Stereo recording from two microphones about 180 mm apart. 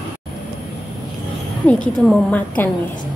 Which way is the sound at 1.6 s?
5° left (ahead or behind).